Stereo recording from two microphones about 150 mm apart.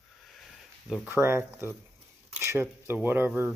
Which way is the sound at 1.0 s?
15° right (ahead or behind).